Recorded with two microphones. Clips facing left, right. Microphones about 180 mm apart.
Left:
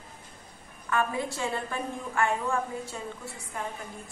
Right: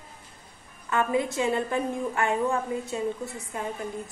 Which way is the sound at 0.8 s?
20° right (ahead or behind).